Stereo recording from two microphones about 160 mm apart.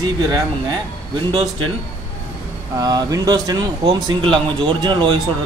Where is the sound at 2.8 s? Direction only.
25° right (ahead or behind).